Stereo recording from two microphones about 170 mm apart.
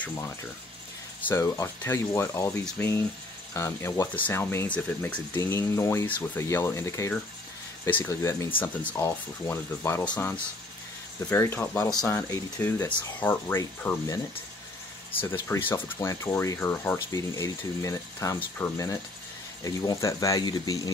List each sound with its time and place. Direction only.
1.2 s speech: 15° left (ahead or behind)
15.2 s speech: 15° left (ahead or behind)